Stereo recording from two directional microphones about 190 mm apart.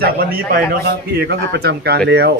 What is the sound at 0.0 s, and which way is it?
A man's voice, 50° right (ahead or behind).